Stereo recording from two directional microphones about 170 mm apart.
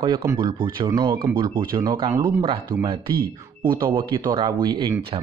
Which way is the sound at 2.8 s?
30° right (ahead or behind).